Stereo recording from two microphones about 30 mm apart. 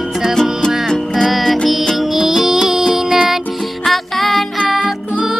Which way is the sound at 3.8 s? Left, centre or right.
Centre.